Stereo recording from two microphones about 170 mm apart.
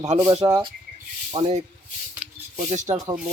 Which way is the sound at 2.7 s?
45° right (ahead or behind).